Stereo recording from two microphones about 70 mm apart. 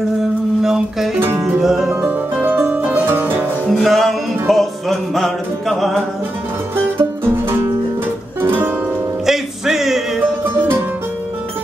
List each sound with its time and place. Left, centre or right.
0.6 s a sound: centre
1.6 s music: centre
2.7 s music: right
3.7 s music: centre
7.0 s music: right
9.2 s music: centre